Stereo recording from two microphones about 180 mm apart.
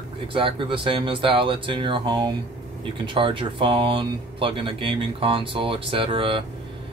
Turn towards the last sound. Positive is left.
turn(degrees=-30)  # may be behind; listen again after turning